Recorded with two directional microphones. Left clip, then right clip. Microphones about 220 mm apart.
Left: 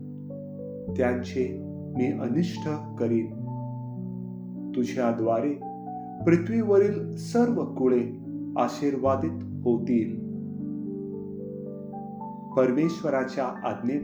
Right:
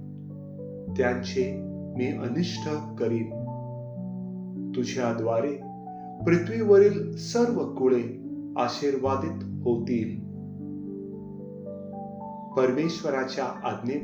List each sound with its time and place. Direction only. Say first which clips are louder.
1.0 s speech: right 1 dB; 40° left (ahead or behind)
4.7 s speech: left 2 dB; 45° left (ahead or behind)
12.5 s speech: left 1 dB; 40° left (ahead or behind)